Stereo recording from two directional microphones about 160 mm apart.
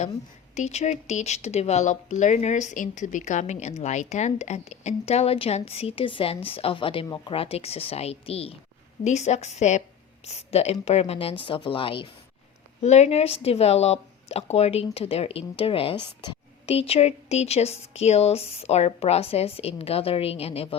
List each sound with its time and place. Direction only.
0.5 s a woman's voice: 45° left (ahead or behind)
12.8 s a woman's voice: 45° left (ahead or behind)